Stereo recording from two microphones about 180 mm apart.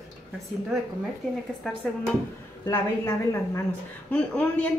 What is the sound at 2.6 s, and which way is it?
A woman's voice, 15° left (ahead or behind).